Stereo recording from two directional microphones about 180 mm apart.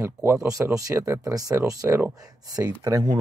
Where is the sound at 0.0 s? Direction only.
15° right (ahead or behind).